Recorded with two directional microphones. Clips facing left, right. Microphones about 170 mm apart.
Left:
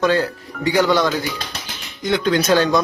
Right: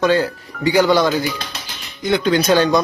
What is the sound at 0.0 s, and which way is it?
Speech, centre (ahead or behind).